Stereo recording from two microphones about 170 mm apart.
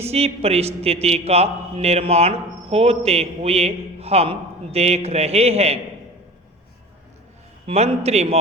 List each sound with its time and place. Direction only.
0.0 s a man's voice: 35° right (ahead or behind)
7.7 s a man's voice: 40° right (ahead or behind)